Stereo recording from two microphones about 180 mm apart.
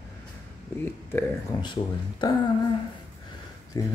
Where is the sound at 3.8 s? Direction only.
20° left (ahead or behind).